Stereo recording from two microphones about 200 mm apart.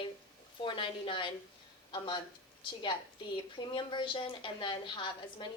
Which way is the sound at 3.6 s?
25° left (ahead or behind).